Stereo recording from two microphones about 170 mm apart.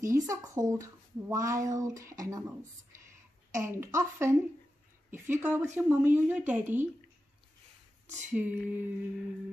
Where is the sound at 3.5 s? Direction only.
15° right (ahead or behind).